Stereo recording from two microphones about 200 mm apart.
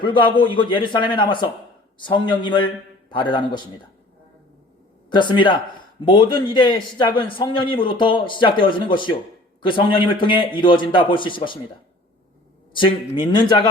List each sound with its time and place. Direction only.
0.0 s a man's voice: 25° left (ahead or behind)
5.0 s a man's voice: 20° left (ahead or behind)
12.7 s a man's voice: 25° left (ahead or behind)